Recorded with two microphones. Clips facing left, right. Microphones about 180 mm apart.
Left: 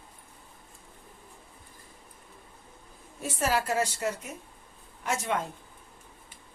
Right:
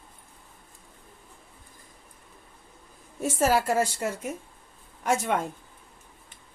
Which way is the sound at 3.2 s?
45° right (ahead or behind).